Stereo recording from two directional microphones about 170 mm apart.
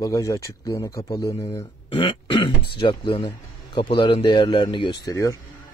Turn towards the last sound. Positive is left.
turn(degrees=20)  # may be behind; listen again after turning